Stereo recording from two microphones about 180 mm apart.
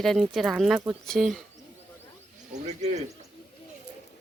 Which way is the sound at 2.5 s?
40° right (ahead or behind).